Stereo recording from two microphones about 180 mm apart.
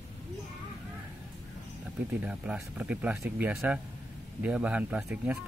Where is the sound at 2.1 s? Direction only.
5° right (ahead or behind).